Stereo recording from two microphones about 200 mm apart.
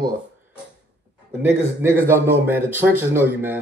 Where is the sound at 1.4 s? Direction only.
10° right (ahead or behind).